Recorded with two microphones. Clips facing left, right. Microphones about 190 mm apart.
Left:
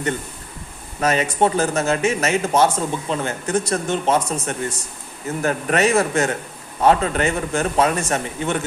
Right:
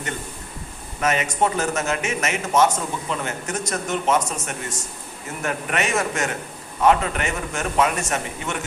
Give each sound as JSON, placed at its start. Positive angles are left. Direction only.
{"t": 1.0, "sound": "a man's voice", "side_deg": 35}